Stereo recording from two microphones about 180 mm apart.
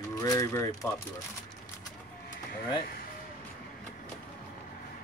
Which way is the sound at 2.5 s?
55° left (ahead or behind).